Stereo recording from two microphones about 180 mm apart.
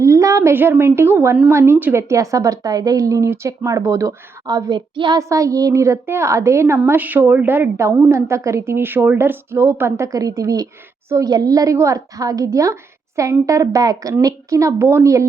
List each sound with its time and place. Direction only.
0.0 s a woman's voice: 15° right (ahead or behind)